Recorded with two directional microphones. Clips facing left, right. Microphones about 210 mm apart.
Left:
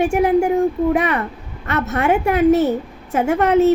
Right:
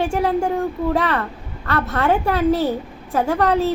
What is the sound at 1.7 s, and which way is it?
A woman's voice, 20° left (ahead or behind).